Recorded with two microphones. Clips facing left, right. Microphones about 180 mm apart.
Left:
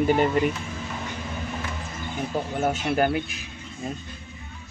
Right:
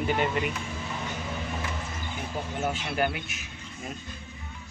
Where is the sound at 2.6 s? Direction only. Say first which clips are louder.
Left 5 dB; 45° left (ahead or behind); by 4.0 s 30° left (ahead or behind).